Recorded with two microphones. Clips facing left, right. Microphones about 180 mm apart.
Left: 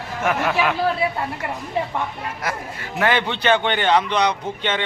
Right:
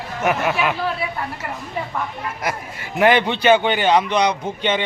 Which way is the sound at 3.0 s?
15° right (ahead or behind).